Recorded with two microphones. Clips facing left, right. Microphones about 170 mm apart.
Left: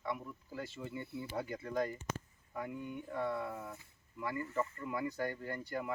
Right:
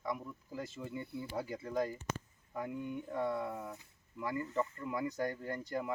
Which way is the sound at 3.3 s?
Centre (ahead or behind).